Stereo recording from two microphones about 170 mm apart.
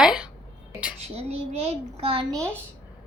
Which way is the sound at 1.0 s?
40° right (ahead or behind).